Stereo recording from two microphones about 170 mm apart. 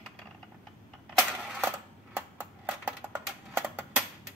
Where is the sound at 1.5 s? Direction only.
10° right (ahead or behind).